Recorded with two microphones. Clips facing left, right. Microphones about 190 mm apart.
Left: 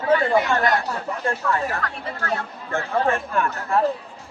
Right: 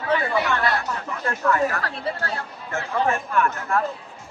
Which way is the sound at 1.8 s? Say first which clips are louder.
Right 2 dB; 35° right (ahead or behind).